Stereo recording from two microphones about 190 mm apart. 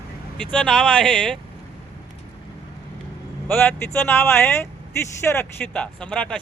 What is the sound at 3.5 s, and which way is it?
Speech, 10° left (ahead or behind).